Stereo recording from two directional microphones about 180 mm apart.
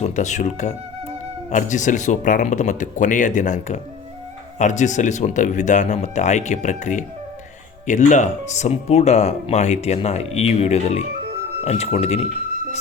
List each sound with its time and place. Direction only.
0.0 s speech: 40° left (ahead or behind)